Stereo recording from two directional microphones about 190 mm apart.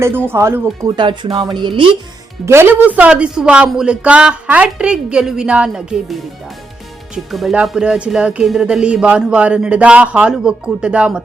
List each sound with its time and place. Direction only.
0.0 s speech: 10° right (ahead or behind)
2.5 s speech: 10° right (ahead or behind)
7.3 s speech: centre (ahead or behind)